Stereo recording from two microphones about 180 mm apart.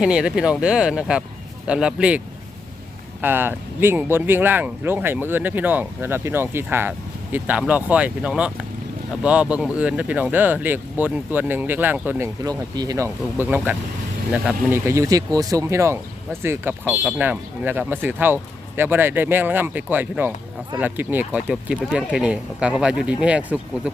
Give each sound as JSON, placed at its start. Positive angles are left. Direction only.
{"t": 0.0, "sound": "speech", "side_deg": -5}
{"t": 12.5, "sound": "speech", "side_deg": -20}